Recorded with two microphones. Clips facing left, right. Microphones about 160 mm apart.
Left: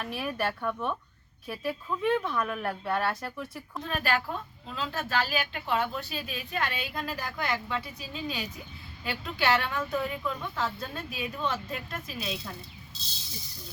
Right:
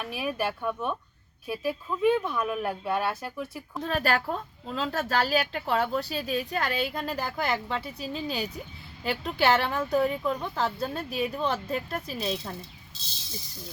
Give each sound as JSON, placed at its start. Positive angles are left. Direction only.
{"t": 0.0, "sound": "a woman's voice", "side_deg": -5}
{"t": 3.8, "sound": "a woman's voice", "side_deg": -35}